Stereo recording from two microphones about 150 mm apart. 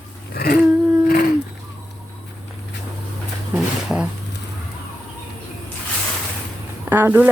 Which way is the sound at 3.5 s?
5° right (ahead or behind).